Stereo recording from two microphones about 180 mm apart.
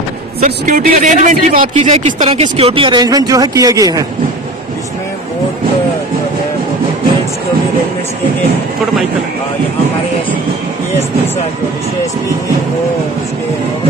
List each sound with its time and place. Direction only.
0.4 s speech: 45° right (ahead or behind)
1.8 s speech: 35° right (ahead or behind); by 4.0 s 20° right (ahead or behind)